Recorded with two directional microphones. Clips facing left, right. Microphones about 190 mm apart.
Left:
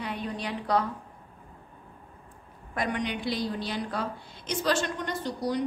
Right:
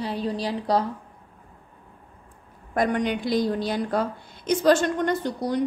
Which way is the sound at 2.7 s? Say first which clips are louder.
Right 7 dB; 45° right (ahead or behind).